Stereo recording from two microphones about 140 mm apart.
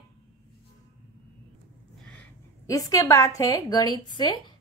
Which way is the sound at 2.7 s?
25° left (ahead or behind).